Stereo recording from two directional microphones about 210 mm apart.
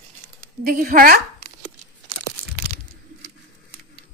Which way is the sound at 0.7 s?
40° right (ahead or behind).